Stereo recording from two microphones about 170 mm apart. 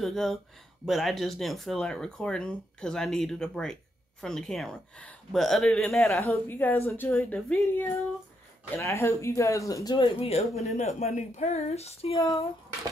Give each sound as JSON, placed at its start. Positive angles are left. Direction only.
{"t": 0.0, "sound": "a woman's voice", "side_deg": 0}
{"t": 12.2, "sound": "speech", "side_deg": 20}